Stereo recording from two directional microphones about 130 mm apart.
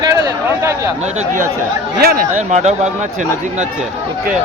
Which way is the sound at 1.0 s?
65° right (ahead or behind).